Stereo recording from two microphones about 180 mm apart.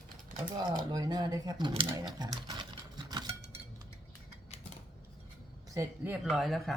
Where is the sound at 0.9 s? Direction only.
20° right (ahead or behind).